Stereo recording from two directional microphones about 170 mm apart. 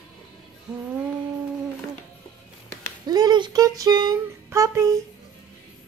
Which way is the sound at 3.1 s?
25° right (ahead or behind).